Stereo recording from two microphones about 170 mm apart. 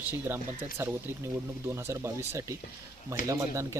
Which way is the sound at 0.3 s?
10° right (ahead or behind).